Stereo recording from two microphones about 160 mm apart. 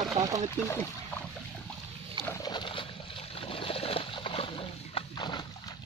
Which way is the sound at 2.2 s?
20° left (ahead or behind).